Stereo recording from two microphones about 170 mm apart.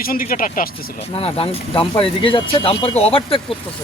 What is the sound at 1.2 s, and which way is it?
Speech, 30° left (ahead or behind).